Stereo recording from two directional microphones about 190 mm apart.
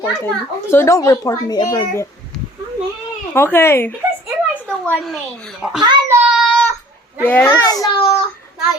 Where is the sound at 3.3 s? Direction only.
15° left (ahead or behind).